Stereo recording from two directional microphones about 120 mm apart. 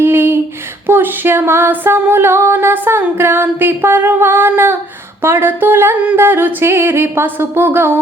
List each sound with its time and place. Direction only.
0.0 s singing: 20° right (ahead or behind)
0.9 s music: 15° right (ahead or behind)
5.2 s singing: 20° right (ahead or behind)